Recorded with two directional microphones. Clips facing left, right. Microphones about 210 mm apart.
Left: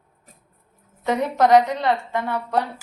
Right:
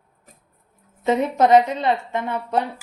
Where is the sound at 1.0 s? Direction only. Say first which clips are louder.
Right 2 dB; 20° right (ahead or behind).